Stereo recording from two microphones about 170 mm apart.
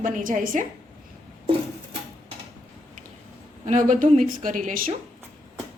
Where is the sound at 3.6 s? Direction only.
45° right (ahead or behind).